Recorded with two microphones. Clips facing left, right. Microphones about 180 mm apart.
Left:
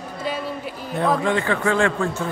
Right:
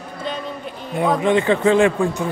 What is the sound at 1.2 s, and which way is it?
A man's voice, 20° right (ahead or behind).